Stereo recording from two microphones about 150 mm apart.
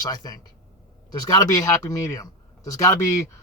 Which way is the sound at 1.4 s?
25° left (ahead or behind).